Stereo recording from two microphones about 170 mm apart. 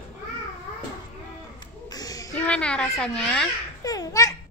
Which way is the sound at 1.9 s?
20° left (ahead or behind).